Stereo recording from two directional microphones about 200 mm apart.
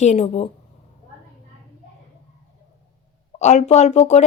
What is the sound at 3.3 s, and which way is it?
Speech, 35° left (ahead or behind).